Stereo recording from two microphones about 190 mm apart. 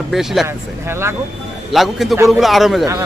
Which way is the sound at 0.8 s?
15° right (ahead or behind).